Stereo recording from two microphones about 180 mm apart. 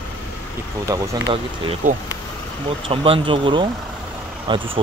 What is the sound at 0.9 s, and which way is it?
Speech, 20° right (ahead or behind).